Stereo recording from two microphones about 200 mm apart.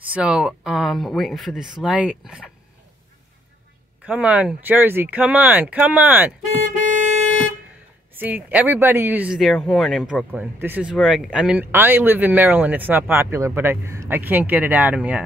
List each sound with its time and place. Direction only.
0.1 s speech: 5° right (ahead or behind)
4.0 s speech: 5° right (ahead or behind)
6.7 s vehicle: 40° right (ahead or behind)
8.1 s speech: 10° right (ahead or behind)